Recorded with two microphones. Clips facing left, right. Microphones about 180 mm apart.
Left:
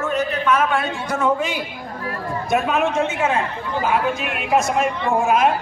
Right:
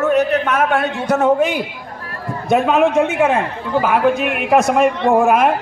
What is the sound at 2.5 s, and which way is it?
A woman's voice, 60° right (ahead or behind).